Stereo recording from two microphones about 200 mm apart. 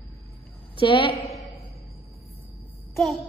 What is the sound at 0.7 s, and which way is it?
Speech, 25° left (ahead or behind).